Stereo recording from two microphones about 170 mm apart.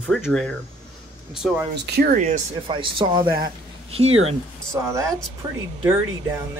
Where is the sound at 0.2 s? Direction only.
5° left (ahead or behind).